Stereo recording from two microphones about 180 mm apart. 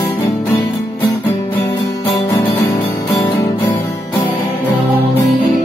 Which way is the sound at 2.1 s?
20° left (ahead or behind).